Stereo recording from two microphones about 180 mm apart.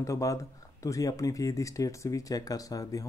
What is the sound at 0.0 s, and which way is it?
Speech, 15° left (ahead or behind).